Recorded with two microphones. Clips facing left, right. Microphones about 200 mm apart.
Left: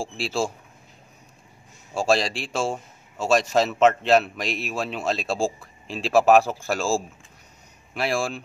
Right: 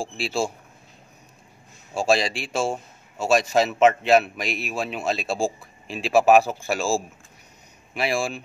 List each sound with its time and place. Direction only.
0.2 s a man's voice: 15° right (ahead or behind)
2.0 s a man's voice: 15° right (ahead or behind)